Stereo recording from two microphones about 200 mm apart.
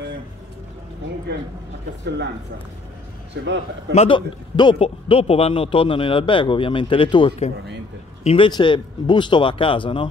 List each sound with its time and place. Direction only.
3.4 s a man's voice: 60° right (ahead or behind)
3.9 s a man's voice: 30° left (ahead or behind)